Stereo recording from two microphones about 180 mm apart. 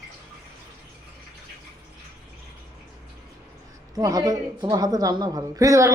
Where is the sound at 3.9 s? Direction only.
20° right (ahead or behind).